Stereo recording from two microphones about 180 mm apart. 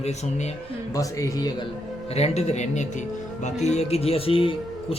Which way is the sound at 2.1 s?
35° left (ahead or behind).